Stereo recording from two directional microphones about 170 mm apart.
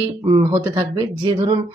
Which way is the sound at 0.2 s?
25° right (ahead or behind).